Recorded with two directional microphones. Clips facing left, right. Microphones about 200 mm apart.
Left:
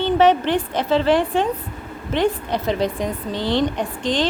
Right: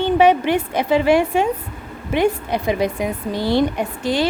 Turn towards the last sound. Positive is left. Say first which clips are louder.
# right 1 dB
turn(degrees=-10)  # may be behind; listen again after turning